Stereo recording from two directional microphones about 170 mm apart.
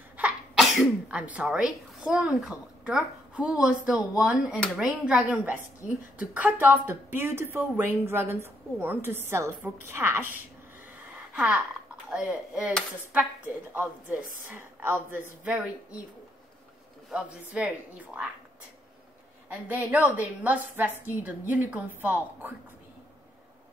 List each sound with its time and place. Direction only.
0.2 s a woman's voice: 5° right (ahead or behind)
13.7 s a woman's voice: 10° right (ahead or behind)
17.1 s speech: 5° right (ahead or behind)
20.2 s a woman's voice: 10° right (ahead or behind)